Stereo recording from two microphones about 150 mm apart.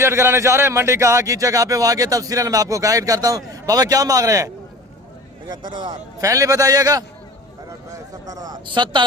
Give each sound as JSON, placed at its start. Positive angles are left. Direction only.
{"t": 0.0, "sound": "speech", "side_deg": -15}
{"t": 8.3, "sound": "speech", "side_deg": -25}